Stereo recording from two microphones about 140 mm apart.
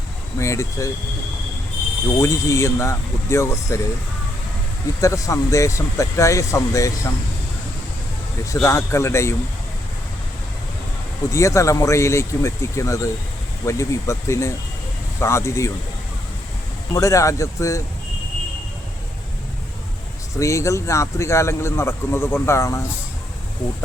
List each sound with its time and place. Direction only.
0.3 s speech: 20° left (ahead or behind)
2.2 s speech: 20° left (ahead or behind)
4.9 s speech: 25° left (ahead or behind)
8.6 s speech: 20° left (ahead or behind)
11.3 s speech: 20° left (ahead or behind)
16.9 s speech: 20° left (ahead or behind)
20.4 s speech: 20° left (ahead or behind)